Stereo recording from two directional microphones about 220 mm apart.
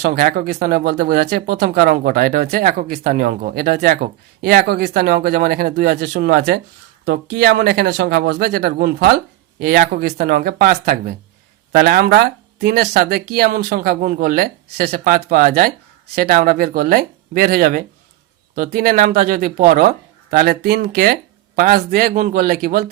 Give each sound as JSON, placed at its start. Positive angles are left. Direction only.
{"t": 0.0, "sound": "speech", "side_deg": -45}